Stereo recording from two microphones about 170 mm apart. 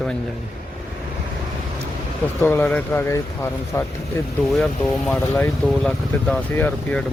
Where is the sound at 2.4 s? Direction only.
10° left (ahead or behind).